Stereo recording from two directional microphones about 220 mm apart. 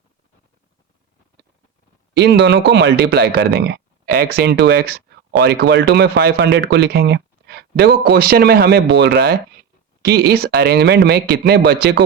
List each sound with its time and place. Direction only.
2.1 s speech: 50° right (ahead or behind)